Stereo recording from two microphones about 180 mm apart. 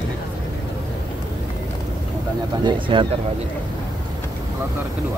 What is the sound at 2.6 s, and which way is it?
Speech, 25° right (ahead or behind).